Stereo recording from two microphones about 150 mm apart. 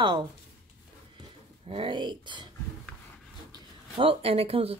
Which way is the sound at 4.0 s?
40° right (ahead or behind).